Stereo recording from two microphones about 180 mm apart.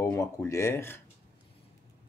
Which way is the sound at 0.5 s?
15° left (ahead or behind).